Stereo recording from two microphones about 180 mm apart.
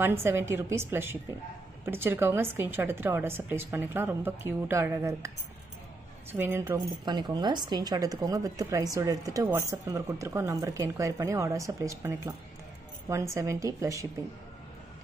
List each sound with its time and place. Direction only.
0.0 s a woman's voice: 15° right (ahead or behind)
6.3 s a woman's voice: 10° right (ahead or behind)